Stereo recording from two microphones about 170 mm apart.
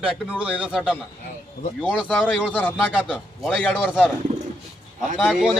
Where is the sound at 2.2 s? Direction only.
5° left (ahead or behind).